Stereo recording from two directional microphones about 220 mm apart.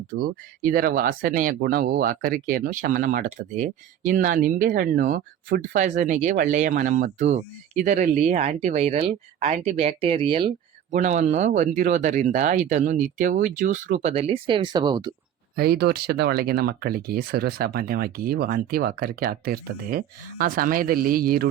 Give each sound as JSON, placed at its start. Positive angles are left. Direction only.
{"t": 0.1, "sound": "speech", "side_deg": -40}
{"t": 15.5, "sound": "speech", "side_deg": -45}